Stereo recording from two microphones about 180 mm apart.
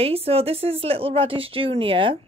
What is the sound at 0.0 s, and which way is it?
Speech, 35° right (ahead or behind).